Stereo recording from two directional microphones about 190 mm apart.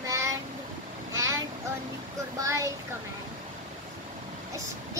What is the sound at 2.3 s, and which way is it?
Child singing, 15° right (ahead or behind).